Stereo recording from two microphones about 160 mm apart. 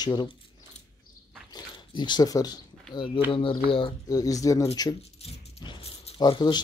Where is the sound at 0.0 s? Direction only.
30° left (ahead or behind).